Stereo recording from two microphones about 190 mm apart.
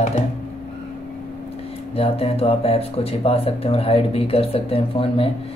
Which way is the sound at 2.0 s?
30° left (ahead or behind).